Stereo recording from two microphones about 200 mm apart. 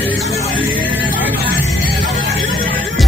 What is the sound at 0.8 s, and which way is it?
Music, 10° right (ahead or behind).